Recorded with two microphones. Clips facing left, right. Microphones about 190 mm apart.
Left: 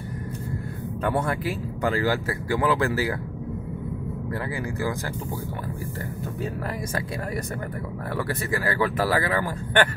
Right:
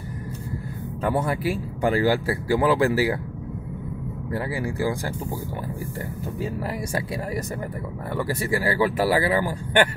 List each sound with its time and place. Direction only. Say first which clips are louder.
1.0 s speech: right 2 dB; 5° right (ahead or behind)
2.2 s speech: right 3 dB; 30° right (ahead or behind)
2.7 s speech: right 4 dB; 20° right (ahead or behind)
8.3 s speech: right 4 dB; 10° right (ahead or behind)